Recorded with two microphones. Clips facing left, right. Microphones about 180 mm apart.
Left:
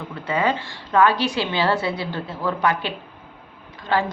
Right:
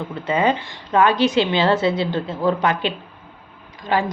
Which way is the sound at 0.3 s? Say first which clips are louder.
Right 3 dB; 20° right (ahead or behind).